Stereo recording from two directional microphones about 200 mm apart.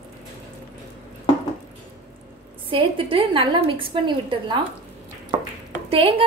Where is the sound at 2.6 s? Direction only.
25° right (ahead or behind).